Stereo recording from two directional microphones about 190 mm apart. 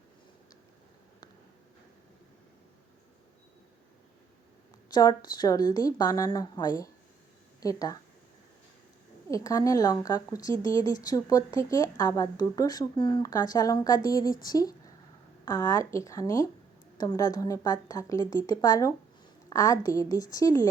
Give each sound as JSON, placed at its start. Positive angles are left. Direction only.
{"t": 4.9, "sound": "a woman's voice", "side_deg": 20}
{"t": 9.3, "sound": "a woman's voice", "side_deg": 20}